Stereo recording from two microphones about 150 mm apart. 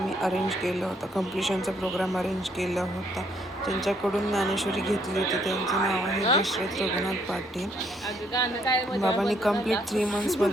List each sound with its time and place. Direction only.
0.2 s speech: centre (ahead or behind)
8.3 s a woman's voice: 25° left (ahead or behind)
9.0 s speech: centre (ahead or behind)